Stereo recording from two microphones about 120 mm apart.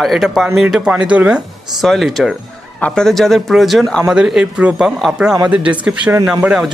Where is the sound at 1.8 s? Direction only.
Centre (ahead or behind).